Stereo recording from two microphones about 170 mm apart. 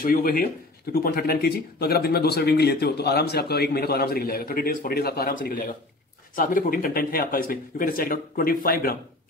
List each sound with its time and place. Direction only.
0.0 s speech: 55° left (ahead or behind)